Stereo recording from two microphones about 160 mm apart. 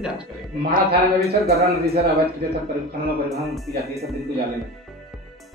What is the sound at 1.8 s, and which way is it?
Speech, 80° right.